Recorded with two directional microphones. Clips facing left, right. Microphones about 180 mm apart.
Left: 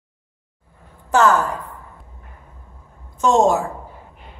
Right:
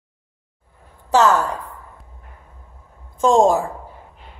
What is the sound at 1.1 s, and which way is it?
Speech, 20° right (ahead or behind).